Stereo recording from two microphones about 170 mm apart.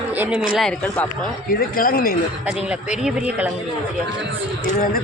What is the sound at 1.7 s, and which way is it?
Speech, 60° left (ahead or behind).